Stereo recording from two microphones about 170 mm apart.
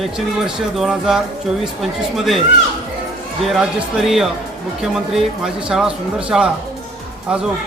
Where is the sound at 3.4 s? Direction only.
5° right (ahead or behind).